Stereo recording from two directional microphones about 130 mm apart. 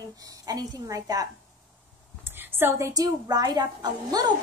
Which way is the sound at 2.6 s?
25° right (ahead or behind).